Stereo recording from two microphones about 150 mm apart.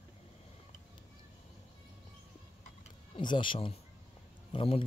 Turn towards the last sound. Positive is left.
turn(degrees=40)  # may be behind; listen again after turning